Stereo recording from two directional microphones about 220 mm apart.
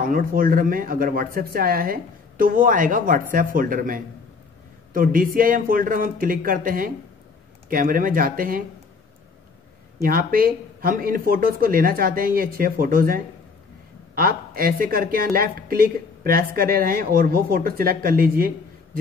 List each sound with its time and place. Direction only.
0.1 s a woman's voice: 40° right (ahead or behind)
10.0 s a woman's voice: 40° right (ahead or behind)